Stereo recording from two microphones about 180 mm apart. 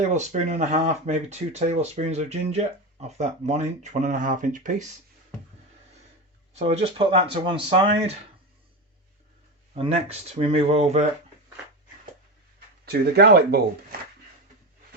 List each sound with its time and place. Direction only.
0.0 s speech: 40° right (ahead or behind)
6.5 s speech: 35° right (ahead or behind)
9.7 s speech: 35° right (ahead or behind)
12.8 s speech: 60° right (ahead or behind)